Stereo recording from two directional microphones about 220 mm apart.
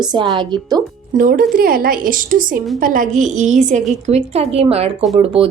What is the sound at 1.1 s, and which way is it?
A woman's voice, 40° right (ahead or behind).